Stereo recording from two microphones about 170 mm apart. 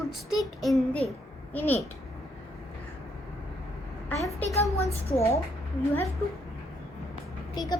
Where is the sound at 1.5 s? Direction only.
10° left (ahead or behind).